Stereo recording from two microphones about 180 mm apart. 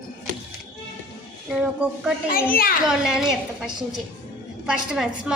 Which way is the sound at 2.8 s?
Centre (ahead or behind).